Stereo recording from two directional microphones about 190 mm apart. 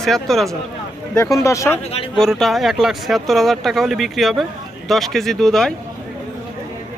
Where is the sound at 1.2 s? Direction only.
15° left (ahead or behind).